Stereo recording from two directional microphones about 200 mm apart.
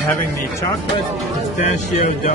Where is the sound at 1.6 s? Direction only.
35° left (ahead or behind).